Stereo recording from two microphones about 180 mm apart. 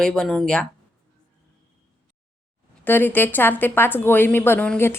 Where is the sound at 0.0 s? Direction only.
5° left (ahead or behind).